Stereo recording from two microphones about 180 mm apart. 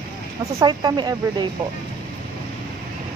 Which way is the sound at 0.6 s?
25° right (ahead or behind).